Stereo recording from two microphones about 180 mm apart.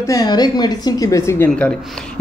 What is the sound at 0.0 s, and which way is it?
A woman's voice, 20° left (ahead or behind).